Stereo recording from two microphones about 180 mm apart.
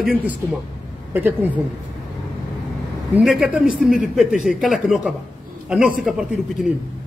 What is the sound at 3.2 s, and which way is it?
Speech, centre (ahead or behind).